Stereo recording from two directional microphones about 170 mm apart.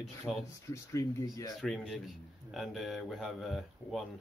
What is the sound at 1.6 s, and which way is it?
Speech, centre (ahead or behind).